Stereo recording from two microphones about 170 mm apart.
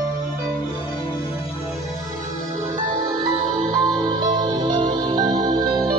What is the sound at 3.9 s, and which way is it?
Music, 25° right (ahead or behind).